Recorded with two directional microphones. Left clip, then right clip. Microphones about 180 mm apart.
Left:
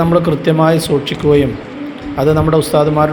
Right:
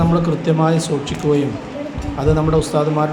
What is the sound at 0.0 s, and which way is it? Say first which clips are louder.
A man's voice: left 6 dB; 25° left (ahead or behind).